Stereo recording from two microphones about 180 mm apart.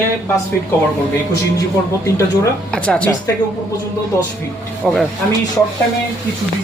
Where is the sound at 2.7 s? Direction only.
5° left (ahead or behind).